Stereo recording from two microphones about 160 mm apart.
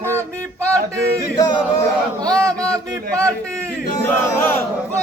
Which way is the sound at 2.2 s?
25° right (ahead or behind).